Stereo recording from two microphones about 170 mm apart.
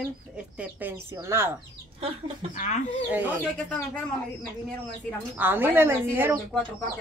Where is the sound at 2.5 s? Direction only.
45° left (ahead or behind).